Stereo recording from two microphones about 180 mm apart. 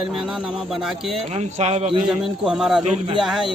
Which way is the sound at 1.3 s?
40° right (ahead or behind).